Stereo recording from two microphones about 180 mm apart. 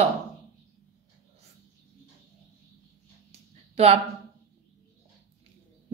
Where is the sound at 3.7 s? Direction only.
35° right (ahead or behind).